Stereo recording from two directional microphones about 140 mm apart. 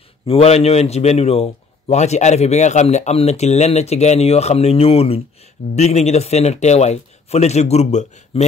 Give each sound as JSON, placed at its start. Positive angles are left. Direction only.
{"t": 0.3, "sound": "a man's voice", "side_deg": 50}